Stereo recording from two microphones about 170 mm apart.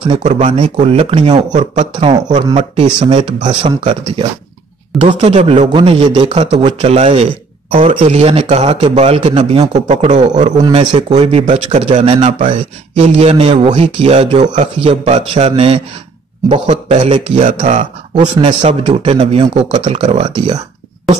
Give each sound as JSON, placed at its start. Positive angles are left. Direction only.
{"t": 0.2, "sound": "a man's voice", "side_deg": -40}
{"t": 1.5, "sound": "a man's voice", "side_deg": -45}
{"t": 2.0, "sound": "a man's voice", "side_deg": -30}
{"t": 5.1, "sound": "speech", "side_deg": -30}
{"t": 5.4, "sound": "a man's voice", "side_deg": -40}
{"t": 14.8, "sound": "a man's voice", "side_deg": -35}
{"t": 18.1, "sound": "a man's voice", "side_deg": -30}